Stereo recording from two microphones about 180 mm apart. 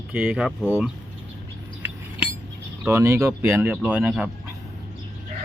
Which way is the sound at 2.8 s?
15° right (ahead or behind).